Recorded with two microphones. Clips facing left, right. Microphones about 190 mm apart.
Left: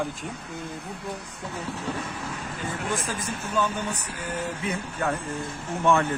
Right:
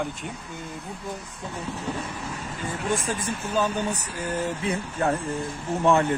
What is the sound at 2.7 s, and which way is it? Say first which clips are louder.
Vehicle: right 3 dB; 25° right (ahead or behind).